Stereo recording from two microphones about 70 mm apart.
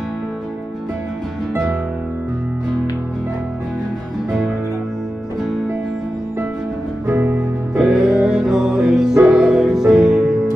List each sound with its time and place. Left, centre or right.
1.5 s music: right
7.1 s music: right
7.7 s music: centre